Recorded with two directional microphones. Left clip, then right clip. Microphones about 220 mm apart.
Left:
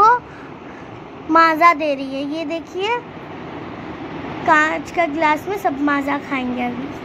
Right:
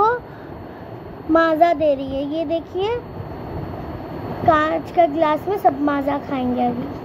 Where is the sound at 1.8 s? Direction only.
30° left (ahead or behind).